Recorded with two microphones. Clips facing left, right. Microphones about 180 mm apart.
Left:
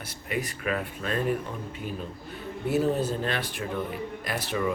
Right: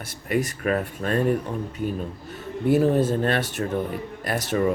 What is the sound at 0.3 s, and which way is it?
Speech, 45° right (ahead or behind).